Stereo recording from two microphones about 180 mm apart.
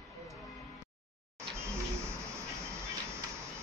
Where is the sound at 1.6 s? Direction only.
15° right (ahead or behind).